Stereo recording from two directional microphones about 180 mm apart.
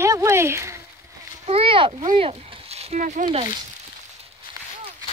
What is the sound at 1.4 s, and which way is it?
Speech, 30° right (ahead or behind).